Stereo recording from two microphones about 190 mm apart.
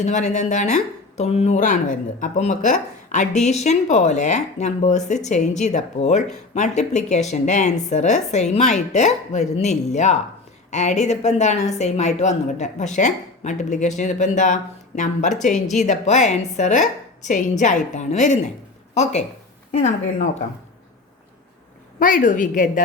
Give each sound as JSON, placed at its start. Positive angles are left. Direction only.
{"t": 0.0, "sound": "speech", "side_deg": 40}
{"t": 19.7, "sound": "speech", "side_deg": 40}
{"t": 21.9, "sound": "a woman's voice", "side_deg": 45}